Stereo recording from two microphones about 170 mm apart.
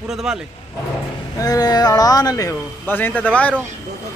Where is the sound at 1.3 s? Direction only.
20° left (ahead or behind).